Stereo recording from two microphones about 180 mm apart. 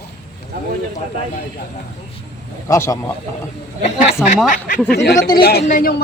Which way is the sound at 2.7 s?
15° left (ahead or behind).